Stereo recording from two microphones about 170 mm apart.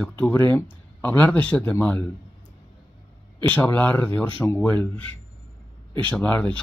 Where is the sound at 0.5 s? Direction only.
10° left (ahead or behind).